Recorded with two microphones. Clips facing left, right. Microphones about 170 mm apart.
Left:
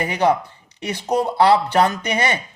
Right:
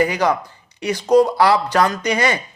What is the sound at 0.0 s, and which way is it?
Speech, 25° left (ahead or behind).